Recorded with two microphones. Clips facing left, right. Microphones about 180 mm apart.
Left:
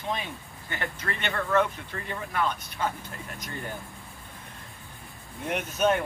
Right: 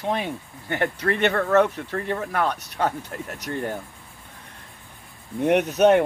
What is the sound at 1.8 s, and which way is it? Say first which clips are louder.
Speech: right 9 dB; 65° right (ahead or behind).